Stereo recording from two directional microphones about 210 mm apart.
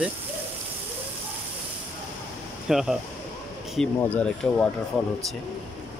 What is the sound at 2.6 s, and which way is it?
Speech, centre (ahead or behind).